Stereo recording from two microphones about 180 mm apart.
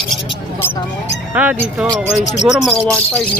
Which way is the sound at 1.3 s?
10° right (ahead or behind).